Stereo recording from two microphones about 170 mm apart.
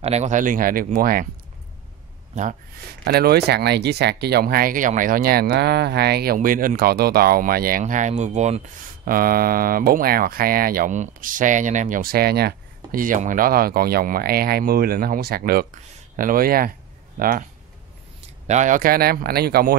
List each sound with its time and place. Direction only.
0.0 s speech: 40° right (ahead or behind); by 1.2 s 60° right (ahead or behind)
2.9 s speech: 70° right (ahead or behind)
7.8 s speech: 45° right (ahead or behind)
9.0 s speech: 60° right (ahead or behind)
18.5 s speech: 45° right (ahead or behind); by 19.8 s 65° right (ahead or behind)